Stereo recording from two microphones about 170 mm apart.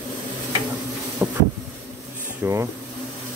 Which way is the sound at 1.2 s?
10° right (ahead or behind).